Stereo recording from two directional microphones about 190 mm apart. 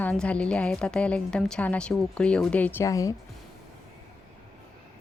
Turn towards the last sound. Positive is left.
turn(degrees=15)  # may be behind; listen again after turning